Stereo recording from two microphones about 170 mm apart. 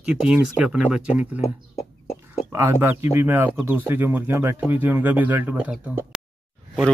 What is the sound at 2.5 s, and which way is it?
Speech, 15° right (ahead or behind).